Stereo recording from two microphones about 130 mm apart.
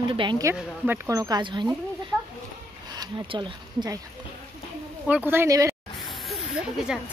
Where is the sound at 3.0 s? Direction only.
35° right (ahead or behind).